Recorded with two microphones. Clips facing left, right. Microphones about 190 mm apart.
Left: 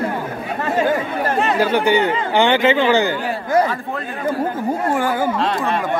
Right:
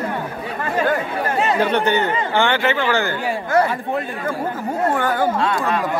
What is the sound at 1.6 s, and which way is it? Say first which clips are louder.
Speech: left 4 dB; 5° left (ahead or behind).